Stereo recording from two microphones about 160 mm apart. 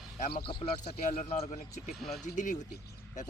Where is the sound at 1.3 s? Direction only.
40° left (ahead or behind).